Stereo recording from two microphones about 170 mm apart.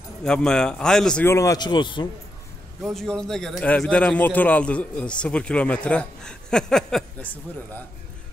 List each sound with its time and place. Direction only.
0.2 s a man's voice: 5° left (ahead or behind)
1.3 s speech: 20° left (ahead or behind)
2.8 s a man's voice: centre (ahead or behind)